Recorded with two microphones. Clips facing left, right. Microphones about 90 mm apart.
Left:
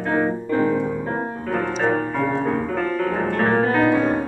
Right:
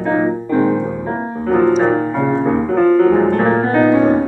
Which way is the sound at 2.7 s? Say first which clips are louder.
Right 11 dB; 30° right (ahead or behind).